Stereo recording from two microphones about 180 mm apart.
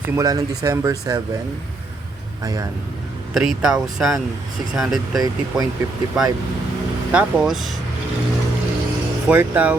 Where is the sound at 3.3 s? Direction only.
5° right (ahead or behind).